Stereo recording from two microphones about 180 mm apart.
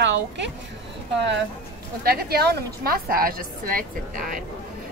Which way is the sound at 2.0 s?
60° right (ahead or behind).